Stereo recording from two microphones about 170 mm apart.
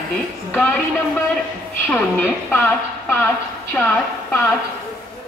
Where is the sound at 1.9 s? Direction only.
10° left (ahead or behind).